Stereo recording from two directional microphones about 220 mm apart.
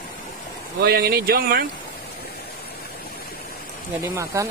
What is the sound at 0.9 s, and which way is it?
Speech, 45° right (ahead or behind).